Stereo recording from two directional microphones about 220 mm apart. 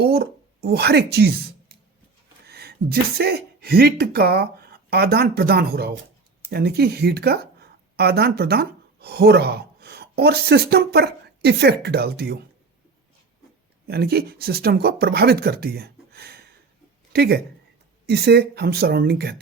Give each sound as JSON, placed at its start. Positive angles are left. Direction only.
{"t": 0.0, "sound": "a woman's voice", "side_deg": -45}
{"t": 2.5, "sound": "a woman's voice", "side_deg": -45}
{"t": 13.8, "sound": "a woman's voice", "side_deg": -45}